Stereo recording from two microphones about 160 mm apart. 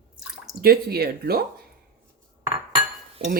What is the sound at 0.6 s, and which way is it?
Speech, 70° right (ahead or behind).